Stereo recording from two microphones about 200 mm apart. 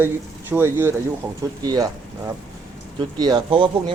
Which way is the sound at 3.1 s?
20° right (ahead or behind).